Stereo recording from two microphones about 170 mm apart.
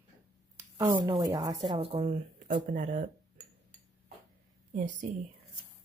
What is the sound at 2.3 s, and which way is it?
Speech, 50° right (ahead or behind).